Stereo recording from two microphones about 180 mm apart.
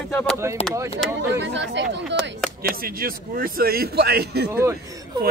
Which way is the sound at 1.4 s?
80° right.